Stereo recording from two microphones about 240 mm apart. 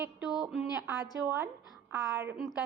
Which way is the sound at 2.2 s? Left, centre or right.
Centre.